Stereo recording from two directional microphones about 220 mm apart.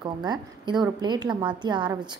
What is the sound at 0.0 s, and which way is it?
A woman's voice, 20° right (ahead or behind).